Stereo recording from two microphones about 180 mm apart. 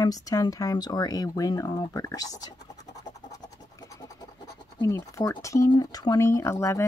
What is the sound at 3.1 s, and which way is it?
Scratch, 20° left (ahead or behind).